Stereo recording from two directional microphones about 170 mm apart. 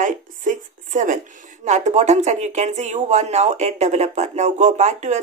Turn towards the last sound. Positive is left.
turn(degrees=-45)  # may be behind; listen again after turning